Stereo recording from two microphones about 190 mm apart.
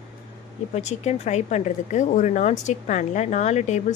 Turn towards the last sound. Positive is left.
turn(degrees=35)  # may be behind; listen again after turning